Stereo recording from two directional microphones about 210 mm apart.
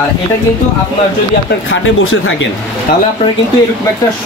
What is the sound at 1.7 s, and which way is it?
Speech, 75° left (ahead or behind).